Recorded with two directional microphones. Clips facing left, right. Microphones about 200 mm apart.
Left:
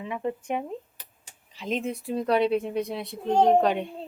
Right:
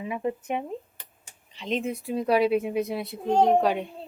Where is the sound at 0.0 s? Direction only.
10° right (ahead or behind).